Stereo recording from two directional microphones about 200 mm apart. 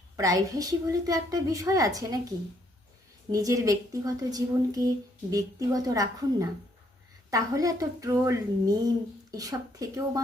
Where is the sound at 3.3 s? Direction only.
15° right (ahead or behind).